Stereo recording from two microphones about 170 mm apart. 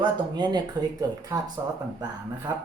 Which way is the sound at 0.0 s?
25° right (ahead or behind).